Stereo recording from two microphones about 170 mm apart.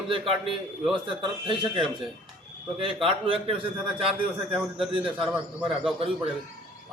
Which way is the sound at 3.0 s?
30° right (ahead or behind).